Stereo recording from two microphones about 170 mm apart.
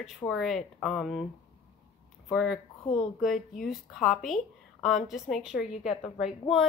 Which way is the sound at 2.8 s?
20° left (ahead or behind).